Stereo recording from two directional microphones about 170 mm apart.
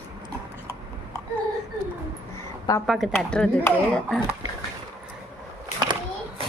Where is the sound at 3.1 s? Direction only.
10° left (ahead or behind).